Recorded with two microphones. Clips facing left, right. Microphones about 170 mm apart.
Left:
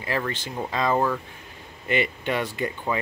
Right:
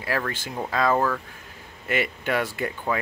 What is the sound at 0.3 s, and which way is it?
Speech, 10° right (ahead or behind).